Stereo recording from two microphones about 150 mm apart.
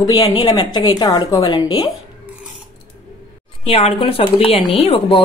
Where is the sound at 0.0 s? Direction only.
25° left (ahead or behind).